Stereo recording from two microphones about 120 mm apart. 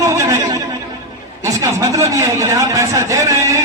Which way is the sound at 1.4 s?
25° right (ahead or behind).